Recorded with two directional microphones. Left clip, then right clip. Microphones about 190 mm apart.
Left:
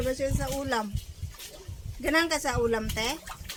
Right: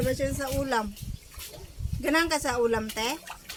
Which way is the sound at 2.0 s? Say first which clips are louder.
Even; 5° right (ahead or behind).